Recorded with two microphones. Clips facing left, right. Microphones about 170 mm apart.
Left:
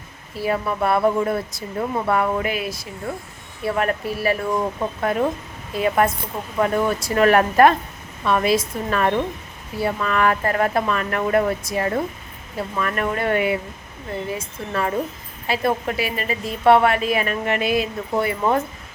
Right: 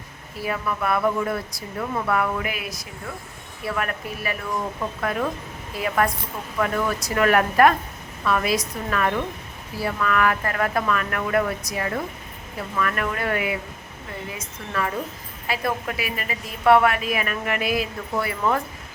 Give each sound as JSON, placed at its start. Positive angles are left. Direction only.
{"t": 0.3, "sound": "a woman's voice", "side_deg": 30}